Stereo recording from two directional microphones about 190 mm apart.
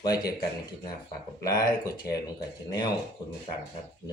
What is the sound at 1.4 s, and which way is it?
Speech, 20° left (ahead or behind).